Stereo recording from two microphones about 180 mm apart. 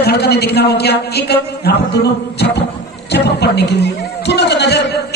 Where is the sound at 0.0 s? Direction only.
65° left (ahead or behind).